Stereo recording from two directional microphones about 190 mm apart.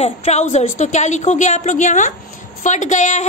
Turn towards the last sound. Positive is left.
turn(degrees=40)  # may be behind; listen again after turning